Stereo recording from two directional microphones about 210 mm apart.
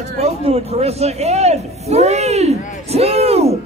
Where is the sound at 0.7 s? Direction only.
30° right (ahead or behind).